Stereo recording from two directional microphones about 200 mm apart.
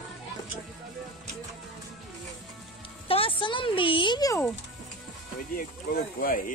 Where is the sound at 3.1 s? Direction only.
25° left (ahead or behind).